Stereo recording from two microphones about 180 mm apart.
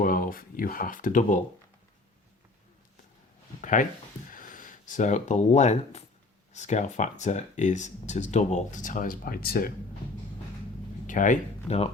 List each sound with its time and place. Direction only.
0.0 s speech: 50° left (ahead or behind)
3.6 s speech: 45° left (ahead or behind)
11.0 s speech: 45° left (ahead or behind)